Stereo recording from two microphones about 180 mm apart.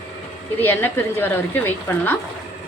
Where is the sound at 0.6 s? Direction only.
10° left (ahead or behind).